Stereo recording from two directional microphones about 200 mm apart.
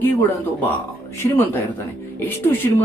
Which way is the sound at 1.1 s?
10° left (ahead or behind).